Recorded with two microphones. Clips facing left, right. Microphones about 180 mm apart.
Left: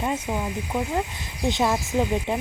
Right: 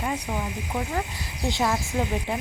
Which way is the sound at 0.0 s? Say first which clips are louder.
Left 3 dB; 15° left (ahead or behind).